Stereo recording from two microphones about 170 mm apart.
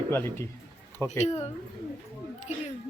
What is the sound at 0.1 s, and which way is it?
Speech, 15° left (ahead or behind).